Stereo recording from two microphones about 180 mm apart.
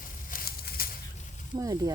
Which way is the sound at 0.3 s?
55° left (ahead or behind).